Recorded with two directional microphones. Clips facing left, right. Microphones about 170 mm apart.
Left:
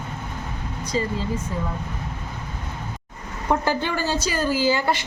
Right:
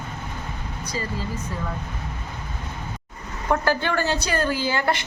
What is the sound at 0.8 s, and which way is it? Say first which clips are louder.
Speech: left 5 dB; 20° left (ahead or behind).